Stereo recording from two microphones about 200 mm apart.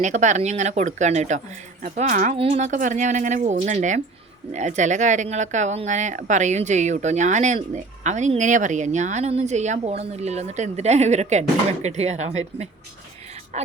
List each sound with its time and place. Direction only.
0.0 s speech: 35° right (ahead or behind)
2.3 s speech: 30° right (ahead or behind)